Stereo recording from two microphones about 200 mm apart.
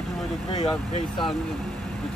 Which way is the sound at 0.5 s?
25° left (ahead or behind).